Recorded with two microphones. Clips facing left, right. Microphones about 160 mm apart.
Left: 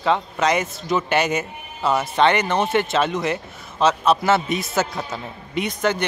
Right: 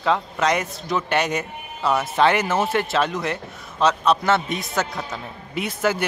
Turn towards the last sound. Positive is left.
turn(degrees=-5)  # may be behind; listen again after turning